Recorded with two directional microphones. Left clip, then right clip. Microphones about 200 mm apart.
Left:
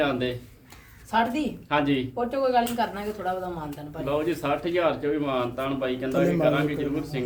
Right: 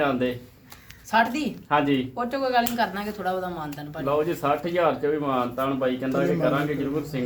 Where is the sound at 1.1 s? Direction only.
Centre (ahead or behind).